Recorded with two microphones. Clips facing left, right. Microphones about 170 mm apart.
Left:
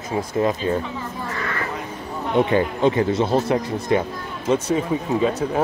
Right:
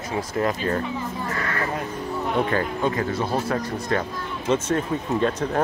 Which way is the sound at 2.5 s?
20° left (ahead or behind).